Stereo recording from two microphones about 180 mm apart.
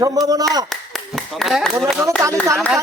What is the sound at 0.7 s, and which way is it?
Clapping, centre (ahead or behind).